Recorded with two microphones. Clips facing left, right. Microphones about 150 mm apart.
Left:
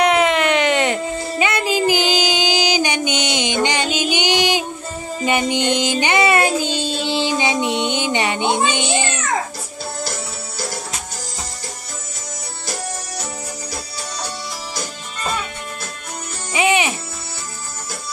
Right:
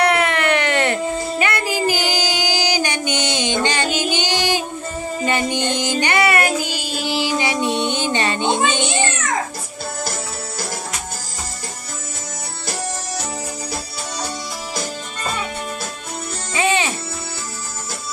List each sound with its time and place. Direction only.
0.0 s music: 20° left (ahead or behind)
5.2 s child singing: 15° left (ahead or behind)
16.5 s music: 15° left (ahead or behind)